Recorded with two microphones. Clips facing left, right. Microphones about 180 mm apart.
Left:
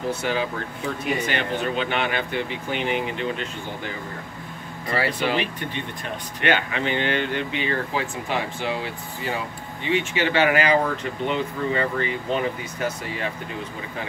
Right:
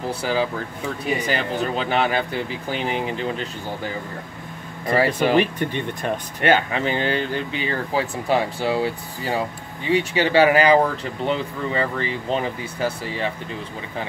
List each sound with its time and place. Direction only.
0.1 s speech: 35° right (ahead or behind)
4.9 s speech: 45° right (ahead or behind)